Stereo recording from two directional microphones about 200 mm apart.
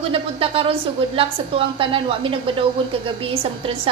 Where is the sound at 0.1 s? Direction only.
25° right (ahead or behind).